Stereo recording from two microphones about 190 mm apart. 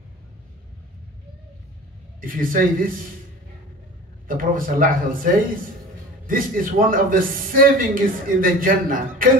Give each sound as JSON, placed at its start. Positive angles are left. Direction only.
{"t": 2.2, "sound": "a man's voice", "side_deg": -45}
{"t": 4.3, "sound": "a man's voice", "side_deg": -45}